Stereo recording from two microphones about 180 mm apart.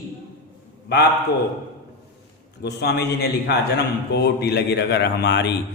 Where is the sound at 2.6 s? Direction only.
65° left (ahead or behind).